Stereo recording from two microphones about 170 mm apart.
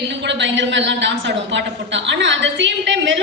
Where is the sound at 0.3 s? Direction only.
90° right.